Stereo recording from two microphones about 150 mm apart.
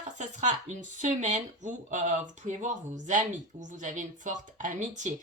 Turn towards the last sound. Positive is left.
turn(degrees=-55)  # may be behind; listen again after turning